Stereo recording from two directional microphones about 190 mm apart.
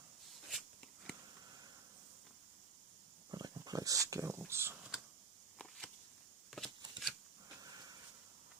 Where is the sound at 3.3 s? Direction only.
20° right (ahead or behind).